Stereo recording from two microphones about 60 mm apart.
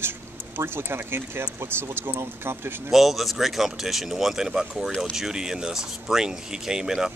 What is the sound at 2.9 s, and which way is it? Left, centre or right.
Speech, centre.